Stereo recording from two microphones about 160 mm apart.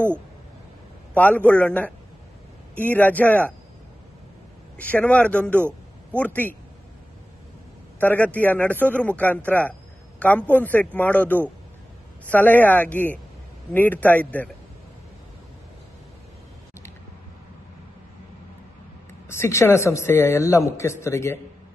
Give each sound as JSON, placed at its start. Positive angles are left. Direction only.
{"t": 1.1, "sound": "a man's voice", "side_deg": 10}
{"t": 4.7, "sound": "a man's voice", "side_deg": 10}
{"t": 5.7, "sound": "a sound", "side_deg": 10}
{"t": 8.0, "sound": "a man's voice", "side_deg": 10}
{"t": 19.2, "sound": "a man's voice", "side_deg": 15}